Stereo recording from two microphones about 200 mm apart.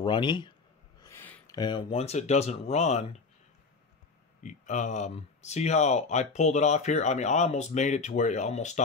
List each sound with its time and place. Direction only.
0.0 s speech: 20° left (ahead or behind)
1.0 s a sound: 10° left (ahead or behind)
1.6 s speech: 25° left (ahead or behind)
4.4 s speech: 40° left (ahead or behind)